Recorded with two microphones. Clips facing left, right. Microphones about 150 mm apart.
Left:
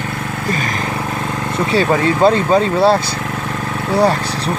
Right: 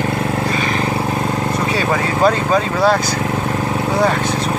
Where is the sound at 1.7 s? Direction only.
30° left (ahead or behind).